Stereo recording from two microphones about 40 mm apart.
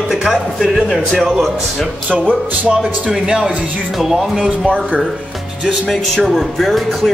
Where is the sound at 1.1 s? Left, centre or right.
Centre.